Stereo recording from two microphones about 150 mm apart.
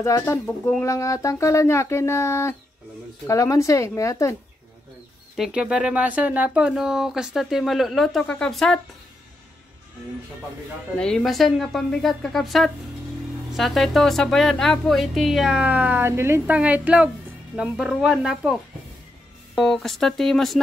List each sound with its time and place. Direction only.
0.0 s speech: 20° left (ahead or behind)
5.3 s speech: 5° right (ahead or behind)
11.0 s speech: 5° left (ahead or behind)